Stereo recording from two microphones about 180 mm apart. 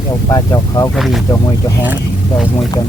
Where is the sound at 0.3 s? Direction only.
20° left (ahead or behind).